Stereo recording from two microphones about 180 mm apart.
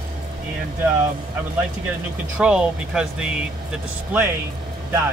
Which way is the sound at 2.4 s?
5° right (ahead or behind).